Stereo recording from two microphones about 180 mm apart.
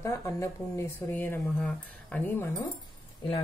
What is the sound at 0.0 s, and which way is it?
Speech, 15° left (ahead or behind).